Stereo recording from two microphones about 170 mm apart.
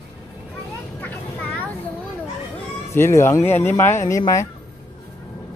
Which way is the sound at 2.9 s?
15° left (ahead or behind).